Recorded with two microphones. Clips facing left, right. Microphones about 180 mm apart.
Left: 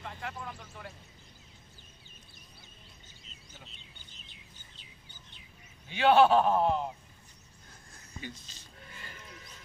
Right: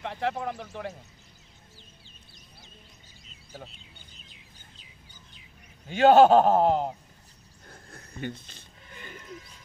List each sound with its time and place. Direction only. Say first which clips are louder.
0.0 s speech: right 11 dB; 70° right (ahead or behind)
5.9 s a man's voice: right 6 dB; 45° right (ahead or behind)
7.6 s a sound: right 9 dB; 60° right (ahead or behind)